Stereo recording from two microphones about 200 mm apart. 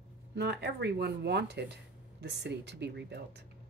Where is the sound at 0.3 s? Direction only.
55° right (ahead or behind).